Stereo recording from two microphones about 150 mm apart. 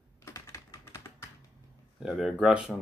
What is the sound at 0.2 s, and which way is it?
Typing, 20° left (ahead or behind).